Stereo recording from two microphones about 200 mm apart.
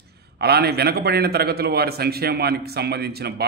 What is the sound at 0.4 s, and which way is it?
A man's voice, 50° right (ahead or behind).